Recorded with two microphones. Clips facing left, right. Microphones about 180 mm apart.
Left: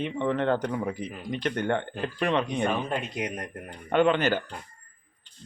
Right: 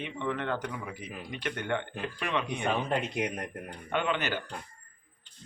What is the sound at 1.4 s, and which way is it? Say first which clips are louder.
Speech: left 5 dB; 45° left (ahead or behind).